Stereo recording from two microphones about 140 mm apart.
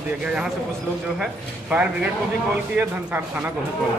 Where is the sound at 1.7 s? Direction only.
10° right (ahead or behind).